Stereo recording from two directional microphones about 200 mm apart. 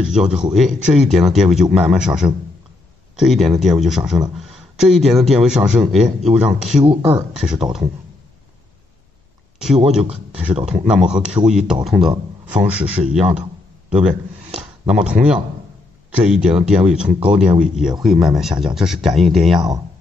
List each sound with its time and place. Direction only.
0.1 s speech: 5° right (ahead or behind)
6.8 s speech: 25° right (ahead or behind)
9.8 s a man's voice: 5° right (ahead or behind)